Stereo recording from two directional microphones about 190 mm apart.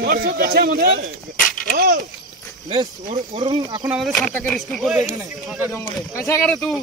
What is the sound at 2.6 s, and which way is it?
Speech, 25° right (ahead or behind).